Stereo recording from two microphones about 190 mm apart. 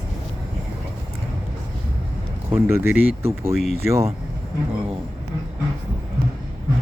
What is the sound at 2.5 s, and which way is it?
Speech, 10° right (ahead or behind).